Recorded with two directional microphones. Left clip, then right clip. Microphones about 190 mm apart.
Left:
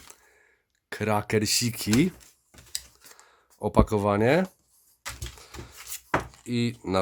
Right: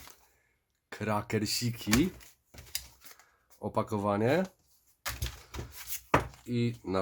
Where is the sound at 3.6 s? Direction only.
45° left (ahead or behind).